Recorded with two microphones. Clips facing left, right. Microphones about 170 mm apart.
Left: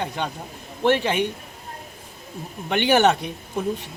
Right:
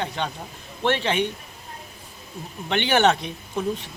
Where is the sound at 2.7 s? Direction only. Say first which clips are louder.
Left 2 dB; 5° left (ahead or behind).